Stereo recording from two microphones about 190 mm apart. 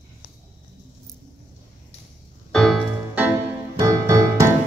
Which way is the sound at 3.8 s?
15° right (ahead or behind).